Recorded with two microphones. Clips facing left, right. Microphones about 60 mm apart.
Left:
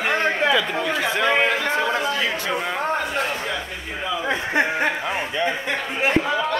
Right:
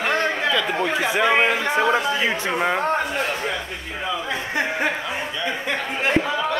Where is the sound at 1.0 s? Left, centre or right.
Centre.